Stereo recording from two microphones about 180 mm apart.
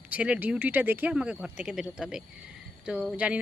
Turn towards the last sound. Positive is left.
turn(degrees=-5)  # may be behind; listen again after turning